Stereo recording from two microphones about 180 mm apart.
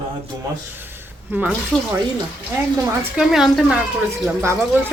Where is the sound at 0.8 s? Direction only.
10° right (ahead or behind).